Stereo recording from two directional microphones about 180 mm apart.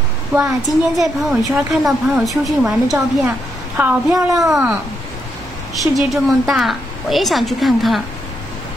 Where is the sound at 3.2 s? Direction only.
15° right (ahead or behind).